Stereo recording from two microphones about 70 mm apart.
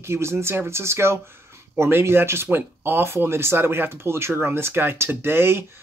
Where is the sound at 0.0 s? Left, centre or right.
Right.